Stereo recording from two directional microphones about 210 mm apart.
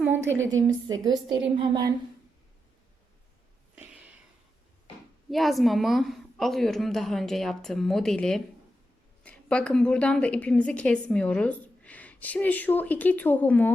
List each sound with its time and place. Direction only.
0.2 s a woman's voice: 65° right (ahead or behind)
0.7 s a woman's voice: 20° right (ahead or behind)
3.8 s a sound: 5° right (ahead or behind)
5.3 s a woman's voice: centre (ahead or behind)